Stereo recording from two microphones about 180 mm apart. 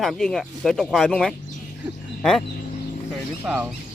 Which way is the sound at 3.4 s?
10° right (ahead or behind).